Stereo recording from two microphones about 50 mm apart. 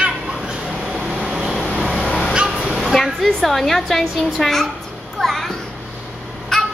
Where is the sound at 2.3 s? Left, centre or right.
Centre.